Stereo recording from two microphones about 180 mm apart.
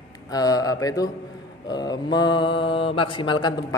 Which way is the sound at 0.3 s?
20° left (ahead or behind).